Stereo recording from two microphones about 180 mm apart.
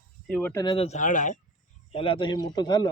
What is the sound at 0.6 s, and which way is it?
Speech, 30° left (ahead or behind).